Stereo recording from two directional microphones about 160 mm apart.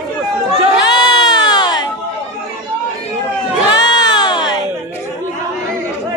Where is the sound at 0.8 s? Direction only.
25° left (ahead or behind).